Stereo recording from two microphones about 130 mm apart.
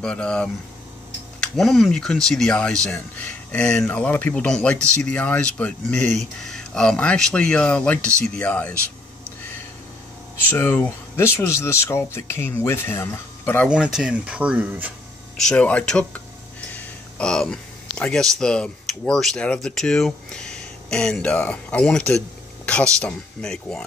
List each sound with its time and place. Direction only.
0.0 s speech: 5° left (ahead or behind)
10.4 s speech: 15° left (ahead or behind)
13.7 s speech: 5° right (ahead or behind)
15.3 s speech: 5° left (ahead or behind)